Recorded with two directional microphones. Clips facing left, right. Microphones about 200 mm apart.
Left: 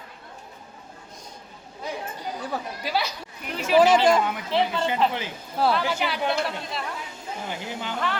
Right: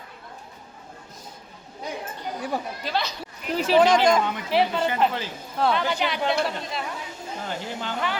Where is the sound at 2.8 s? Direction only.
10° left (ahead or behind).